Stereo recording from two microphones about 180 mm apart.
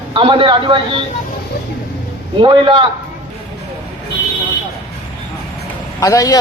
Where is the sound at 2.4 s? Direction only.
25° right (ahead or behind).